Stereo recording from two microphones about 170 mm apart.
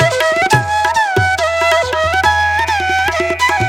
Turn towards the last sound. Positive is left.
turn(degrees=0)  # may be behind; listen again after turning